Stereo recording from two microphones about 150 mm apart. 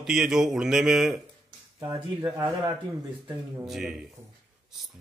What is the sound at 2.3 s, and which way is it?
Speech, 15° right (ahead or behind).